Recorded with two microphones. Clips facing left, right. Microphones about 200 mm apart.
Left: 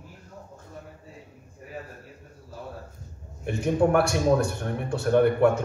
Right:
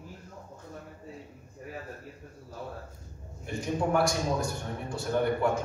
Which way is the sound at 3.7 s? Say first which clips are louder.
Left 5 dB; 65° left (ahead or behind).